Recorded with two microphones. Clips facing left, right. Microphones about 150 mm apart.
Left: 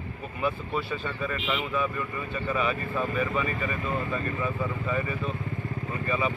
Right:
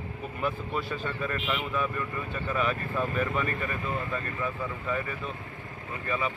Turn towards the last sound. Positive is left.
turn(degrees=5)  # may be behind; listen again after turning